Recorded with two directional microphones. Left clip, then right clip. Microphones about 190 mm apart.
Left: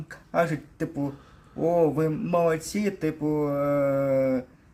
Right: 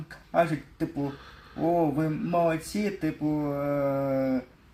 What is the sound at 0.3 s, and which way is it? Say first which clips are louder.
Speech: even; 30° left (ahead or behind).